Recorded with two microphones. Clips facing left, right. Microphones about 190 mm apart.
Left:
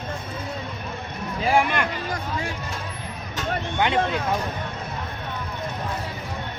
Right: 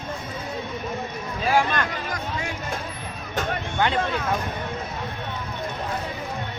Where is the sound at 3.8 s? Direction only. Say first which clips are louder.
Left 1 dB; 15° left (ahead or behind).